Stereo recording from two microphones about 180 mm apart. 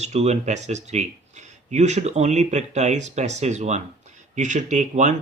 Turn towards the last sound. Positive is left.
turn(degrees=-40)  # may be behind; listen again after turning